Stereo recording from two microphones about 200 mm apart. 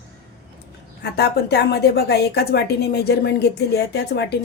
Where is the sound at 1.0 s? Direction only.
55° left (ahead or behind).